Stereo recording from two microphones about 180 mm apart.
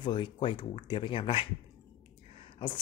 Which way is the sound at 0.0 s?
25° left (ahead or behind).